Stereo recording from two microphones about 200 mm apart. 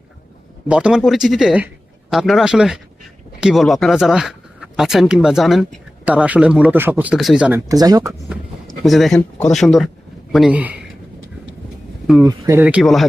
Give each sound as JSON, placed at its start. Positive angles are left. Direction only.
{"t": 0.7, "sound": "speech", "side_deg": -5}
{"t": 7.7, "sound": "speech", "side_deg": -20}
{"t": 8.8, "sound": "speech", "side_deg": 0}
{"t": 12.2, "sound": "speech", "side_deg": -15}